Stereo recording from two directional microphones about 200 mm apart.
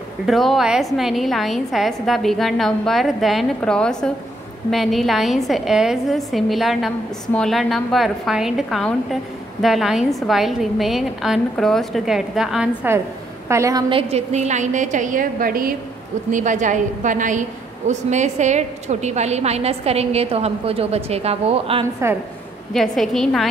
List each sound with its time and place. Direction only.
0.3 s a woman's voice: centre (ahead or behind); by 21.8 s 30° right (ahead or behind)
22.7 s a woman's voice: centre (ahead or behind)